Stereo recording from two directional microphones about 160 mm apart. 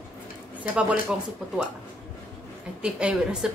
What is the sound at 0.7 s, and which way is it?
Speech, 5° right (ahead or behind).